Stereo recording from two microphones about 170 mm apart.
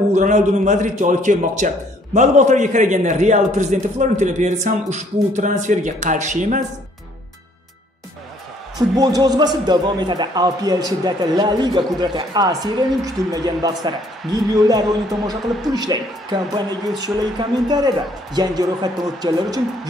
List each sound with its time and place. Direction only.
0.1 s a man's voice: 45° right (ahead or behind)
8.7 s speech: 20° right (ahead or behind)